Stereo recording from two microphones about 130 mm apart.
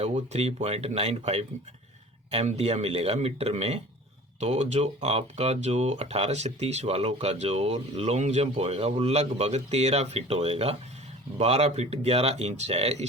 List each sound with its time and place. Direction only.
0.0 s speech: 50° right (ahead or behind)